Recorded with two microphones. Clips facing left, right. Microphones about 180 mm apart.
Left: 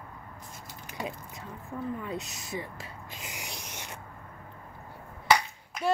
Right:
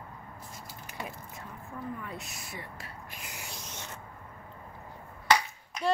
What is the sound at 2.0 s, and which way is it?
Speech, 20° left (ahead or behind).